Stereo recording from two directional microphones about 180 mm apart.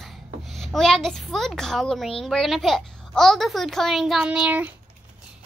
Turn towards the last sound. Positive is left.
turn(degrees=-5)  # may be behind; listen again after turning